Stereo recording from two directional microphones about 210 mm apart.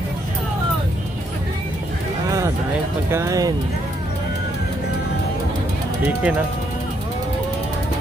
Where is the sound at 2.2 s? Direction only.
15° right (ahead or behind).